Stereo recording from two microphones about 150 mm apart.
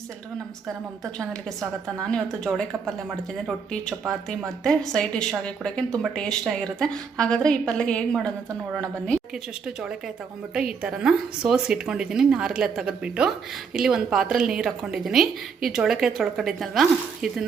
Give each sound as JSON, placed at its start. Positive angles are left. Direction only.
{"t": 2.0, "sound": "a woman's voice", "side_deg": 5}
{"t": 10.5, "sound": "a woman's voice", "side_deg": -5}